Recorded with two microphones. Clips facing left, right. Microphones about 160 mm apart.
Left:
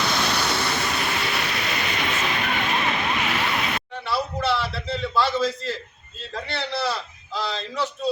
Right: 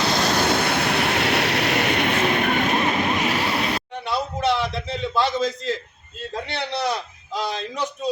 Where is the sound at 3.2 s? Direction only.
35° right (ahead or behind).